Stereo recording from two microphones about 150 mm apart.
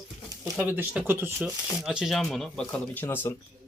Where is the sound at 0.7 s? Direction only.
10° right (ahead or behind); by 3.3 s 15° left (ahead or behind).